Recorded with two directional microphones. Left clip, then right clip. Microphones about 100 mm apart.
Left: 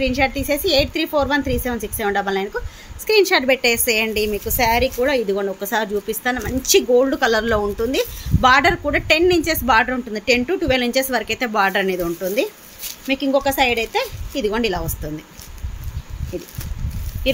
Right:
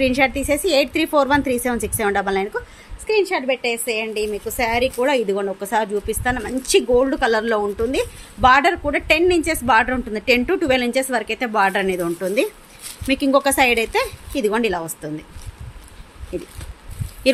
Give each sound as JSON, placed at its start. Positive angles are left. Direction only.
{"t": 0.2, "sound": "a woman's voice", "side_deg": -25}
{"t": 3.1, "sound": "a woman's voice", "side_deg": 25}
{"t": 4.5, "sound": "a woman's voice", "side_deg": -5}
{"t": 9.9, "sound": "a woman's voice", "side_deg": -25}
{"t": 10.8, "sound": "a woman's voice", "side_deg": -15}
{"t": 12.0, "sound": "speech", "side_deg": -35}
{"t": 14.6, "sound": "a woman's voice", "side_deg": -20}
{"t": 16.3, "sound": "a woman's voice", "side_deg": -25}